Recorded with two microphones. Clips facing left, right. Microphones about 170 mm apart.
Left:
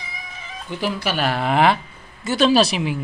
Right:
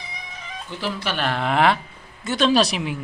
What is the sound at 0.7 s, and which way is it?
Speech, 15° left (ahead or behind).